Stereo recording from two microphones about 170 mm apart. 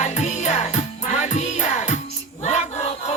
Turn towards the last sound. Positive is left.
turn(degrees=40)  # may be behind; listen again after turning